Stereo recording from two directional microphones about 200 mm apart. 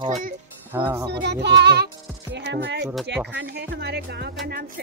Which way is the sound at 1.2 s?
55° right (ahead or behind).